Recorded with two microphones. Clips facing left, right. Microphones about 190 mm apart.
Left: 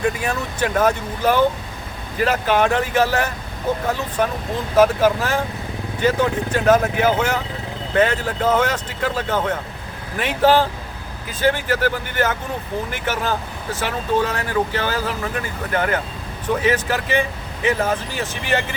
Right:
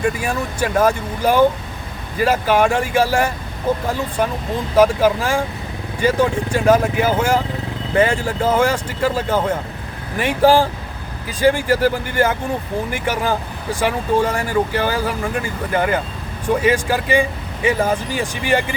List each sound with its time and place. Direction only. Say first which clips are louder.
0.2 s speech: right 1 dB; 10° right (ahead or behind)
4.8 s speech: right 1 dB; 10° right (ahead or behind)